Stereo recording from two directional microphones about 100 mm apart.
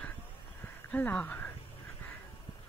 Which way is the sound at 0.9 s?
15° left (ahead or behind).